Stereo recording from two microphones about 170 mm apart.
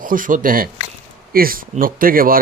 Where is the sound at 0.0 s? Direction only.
55° right (ahead or behind).